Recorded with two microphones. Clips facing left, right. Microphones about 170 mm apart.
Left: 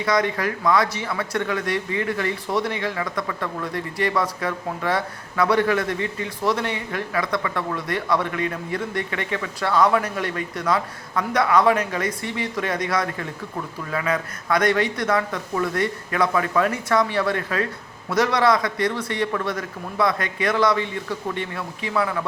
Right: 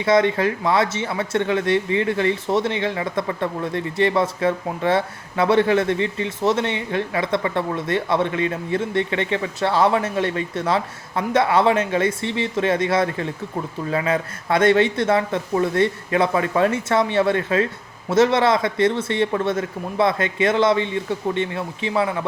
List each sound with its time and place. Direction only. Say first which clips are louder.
0.0 s speech: right 5 dB; 25° right (ahead or behind)